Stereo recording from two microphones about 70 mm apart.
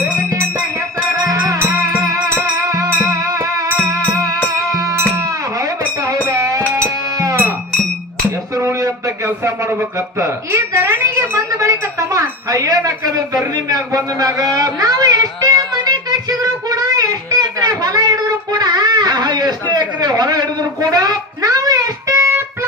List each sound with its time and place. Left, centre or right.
1.2 s music: right
2.6 s music: right
8.5 s a sound: right
22.1 s music: right